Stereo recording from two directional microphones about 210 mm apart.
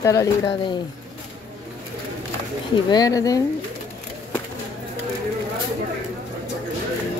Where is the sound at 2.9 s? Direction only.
15° left (ahead or behind).